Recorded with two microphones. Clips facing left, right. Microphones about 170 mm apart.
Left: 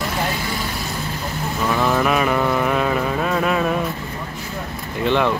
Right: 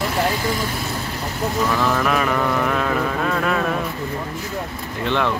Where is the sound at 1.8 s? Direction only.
10° left (ahead or behind).